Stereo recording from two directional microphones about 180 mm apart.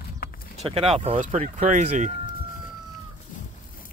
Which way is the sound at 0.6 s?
35° right (ahead or behind).